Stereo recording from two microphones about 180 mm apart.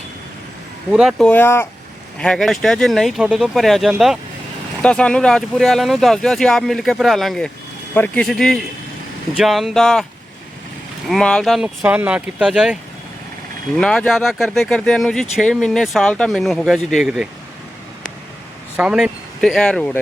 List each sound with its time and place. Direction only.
0.9 s speech: 5° right (ahead or behind)
1.3 s speech: 10° left (ahead or behind)
11.1 s speech: 5° left (ahead or behind)
18.8 s speech: 5° right (ahead or behind)